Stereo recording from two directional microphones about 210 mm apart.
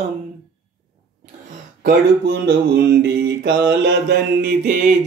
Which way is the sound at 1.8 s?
50° right (ahead or behind).